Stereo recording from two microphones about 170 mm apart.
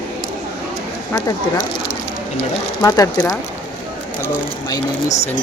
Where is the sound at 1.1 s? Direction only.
20° left (ahead or behind).